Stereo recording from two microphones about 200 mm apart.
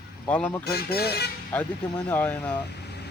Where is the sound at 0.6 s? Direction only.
50° left (ahead or behind).